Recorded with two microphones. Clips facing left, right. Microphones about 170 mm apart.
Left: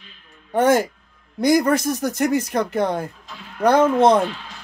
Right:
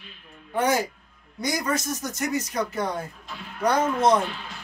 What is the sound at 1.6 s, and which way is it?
Speech, 60° left (ahead or behind).